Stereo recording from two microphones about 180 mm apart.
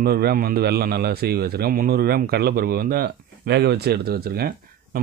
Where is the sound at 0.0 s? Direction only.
60° right (ahead or behind).